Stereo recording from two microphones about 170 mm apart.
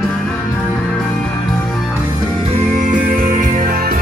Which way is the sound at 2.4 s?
45° right (ahead or behind).